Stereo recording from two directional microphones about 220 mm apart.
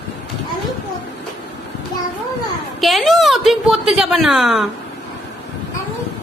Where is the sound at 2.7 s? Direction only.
Centre (ahead or behind).